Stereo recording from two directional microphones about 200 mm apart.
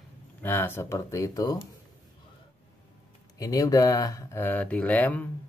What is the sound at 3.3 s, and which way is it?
Speech, 20° left (ahead or behind).